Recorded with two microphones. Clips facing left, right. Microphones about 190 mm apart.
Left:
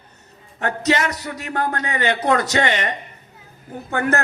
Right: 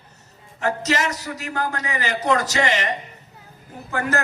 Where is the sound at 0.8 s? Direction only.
30° left (ahead or behind).